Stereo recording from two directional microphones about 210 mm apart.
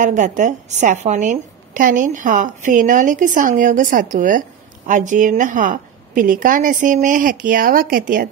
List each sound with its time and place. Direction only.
0.0 s a woman's voice: 35° right (ahead or behind)